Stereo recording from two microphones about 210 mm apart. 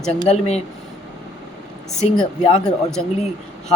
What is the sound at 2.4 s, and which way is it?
Speech, 30° left (ahead or behind).